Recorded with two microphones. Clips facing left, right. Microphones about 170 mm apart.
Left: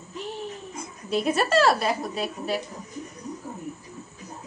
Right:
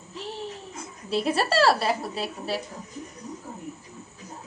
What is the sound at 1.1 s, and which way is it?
A woman's voice, 30° right (ahead or behind).